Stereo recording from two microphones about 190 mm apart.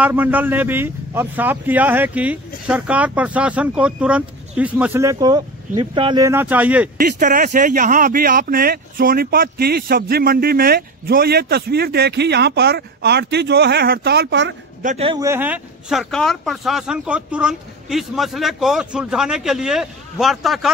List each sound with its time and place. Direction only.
0.0 s speech: 10° right (ahead or behind); by 6.2 s 25° right (ahead or behind)
6.2 s speech: 10° right (ahead or behind)
7.0 s speech: 50° right (ahead or behind); by 14.5 s 65° right (ahead or behind)
14.8 s speech: 40° right (ahead or behind)
15.0 s speech: 15° right (ahead or behind); by 20.7 s centre (ahead or behind)